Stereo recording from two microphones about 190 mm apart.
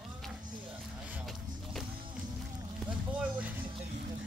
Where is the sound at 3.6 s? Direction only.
25° right (ahead or behind).